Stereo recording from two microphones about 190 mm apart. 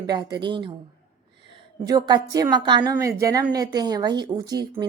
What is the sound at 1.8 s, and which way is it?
A woman's voice, 20° right (ahead or behind).